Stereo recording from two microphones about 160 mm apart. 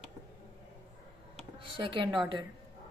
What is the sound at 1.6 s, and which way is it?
Speech, 30° right (ahead or behind).